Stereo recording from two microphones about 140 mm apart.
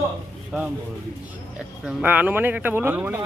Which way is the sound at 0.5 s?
5° right (ahead or behind).